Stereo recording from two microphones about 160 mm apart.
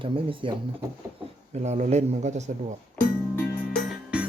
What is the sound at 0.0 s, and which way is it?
Speech, 30° right (ahead or behind).